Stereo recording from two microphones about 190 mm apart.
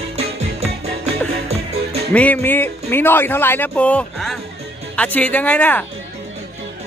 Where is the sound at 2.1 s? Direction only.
10° left (ahead or behind).